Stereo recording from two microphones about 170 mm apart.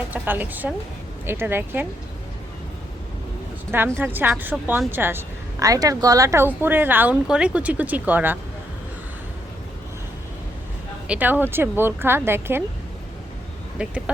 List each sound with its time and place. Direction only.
0.1 s a woman's voice: 10° right (ahead or behind)
3.7 s a woman's voice: 15° right (ahead or behind)
11.1 s a woman's voice: 10° right (ahead or behind)
13.8 s a woman's voice: 5° right (ahead or behind)